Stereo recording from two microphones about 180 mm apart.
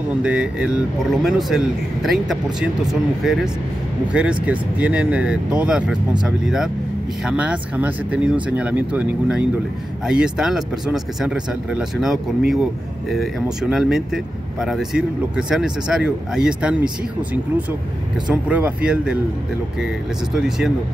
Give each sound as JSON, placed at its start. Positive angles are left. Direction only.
{"t": 0.2, "sound": "speech", "side_deg": -5}
{"t": 20.3, "sound": "speech", "side_deg": -5}